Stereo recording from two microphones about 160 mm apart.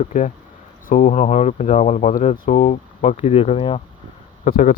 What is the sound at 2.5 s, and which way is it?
Speech, 45° left (ahead or behind).